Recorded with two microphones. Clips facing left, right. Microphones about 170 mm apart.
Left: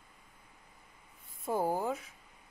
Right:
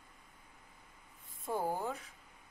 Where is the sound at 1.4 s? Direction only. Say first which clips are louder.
Left 4 dB; 40° left (ahead or behind).